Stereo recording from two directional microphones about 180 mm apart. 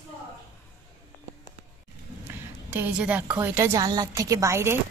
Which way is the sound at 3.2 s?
15° right (ahead or behind).